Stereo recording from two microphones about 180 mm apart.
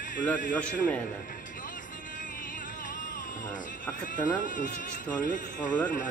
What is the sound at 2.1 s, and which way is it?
Music, 45° left (ahead or behind).